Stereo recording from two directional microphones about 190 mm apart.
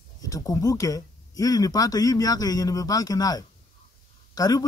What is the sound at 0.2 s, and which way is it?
Speech, 20° left (ahead or behind).